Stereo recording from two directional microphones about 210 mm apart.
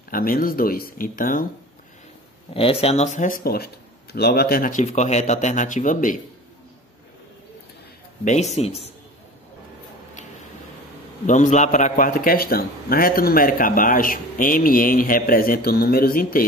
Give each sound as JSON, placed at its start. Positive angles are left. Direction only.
{"t": 0.1, "sound": "a man's voice", "side_deg": 45}
{"t": 2.5, "sound": "speech", "side_deg": 25}
{"t": 8.3, "sound": "speech", "side_deg": 30}
{"t": 11.2, "sound": "a man's voice", "side_deg": 35}